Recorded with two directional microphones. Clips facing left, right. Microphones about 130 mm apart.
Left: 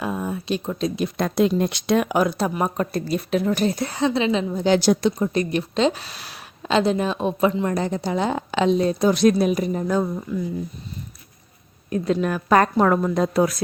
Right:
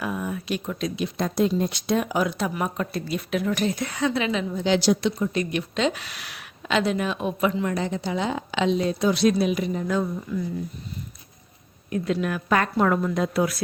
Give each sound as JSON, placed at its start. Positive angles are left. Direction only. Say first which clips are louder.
{"t": 0.0, "sound": "a sound", "louder": "left 2 dB", "side_deg": 30}
{"t": 1.0, "sound": "speech", "louder": "left 3 dB", "side_deg": 65}
{"t": 2.2, "sound": "speech", "louder": "left 4 dB", "side_deg": 35}
{"t": 11.9, "sound": "speech", "louder": "left 3 dB", "side_deg": 35}